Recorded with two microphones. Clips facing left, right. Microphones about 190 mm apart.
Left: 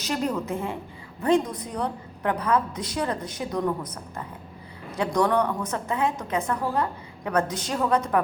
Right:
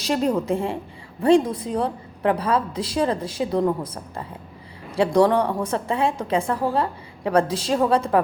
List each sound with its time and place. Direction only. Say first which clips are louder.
0.1 s a woman's voice: right 6 dB; 30° right (ahead or behind)